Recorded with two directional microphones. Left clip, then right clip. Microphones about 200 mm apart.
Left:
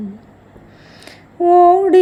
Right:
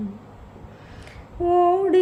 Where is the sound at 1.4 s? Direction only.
10° left (ahead or behind).